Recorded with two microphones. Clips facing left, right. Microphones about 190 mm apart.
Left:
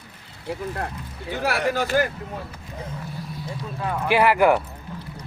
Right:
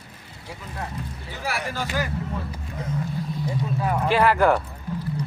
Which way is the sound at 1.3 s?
65° left (ahead or behind).